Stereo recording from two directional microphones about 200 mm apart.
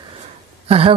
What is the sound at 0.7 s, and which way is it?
Speech, 30° right (ahead or behind).